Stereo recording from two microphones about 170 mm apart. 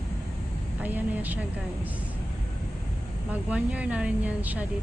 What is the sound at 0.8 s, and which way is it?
Speech, 10° right (ahead or behind).